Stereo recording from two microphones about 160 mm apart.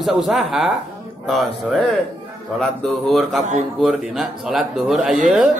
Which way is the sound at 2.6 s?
Centre (ahead or behind).